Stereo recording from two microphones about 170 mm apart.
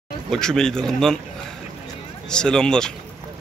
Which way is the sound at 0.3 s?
5° left (ahead or behind).